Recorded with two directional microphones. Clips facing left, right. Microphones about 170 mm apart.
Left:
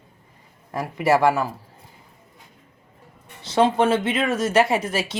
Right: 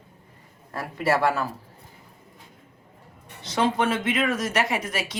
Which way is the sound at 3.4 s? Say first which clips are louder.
Left 5 dB; 30° left (ahead or behind).